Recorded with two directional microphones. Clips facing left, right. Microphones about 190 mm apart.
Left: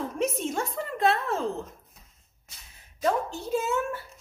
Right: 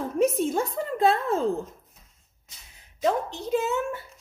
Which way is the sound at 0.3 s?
30° right (ahead or behind).